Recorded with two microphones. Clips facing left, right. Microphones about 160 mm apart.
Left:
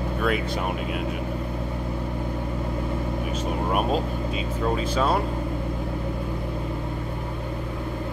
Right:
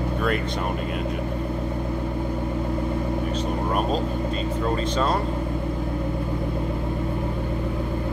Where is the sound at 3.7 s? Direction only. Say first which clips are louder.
Left 1 dB; 5° left (ahead or behind).